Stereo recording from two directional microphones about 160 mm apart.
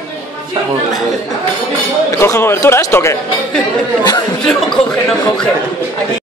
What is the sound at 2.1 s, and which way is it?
Speech, 15° left (ahead or behind).